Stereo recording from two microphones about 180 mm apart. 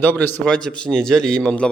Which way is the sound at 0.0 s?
10° left (ahead or behind).